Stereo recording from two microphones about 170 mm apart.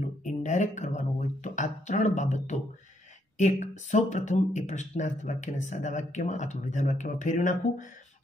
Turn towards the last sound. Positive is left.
turn(degrees=50)  # may be behind; listen again after turning